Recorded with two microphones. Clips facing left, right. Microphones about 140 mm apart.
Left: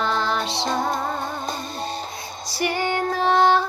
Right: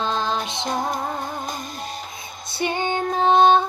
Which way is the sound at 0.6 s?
30° left (ahead or behind).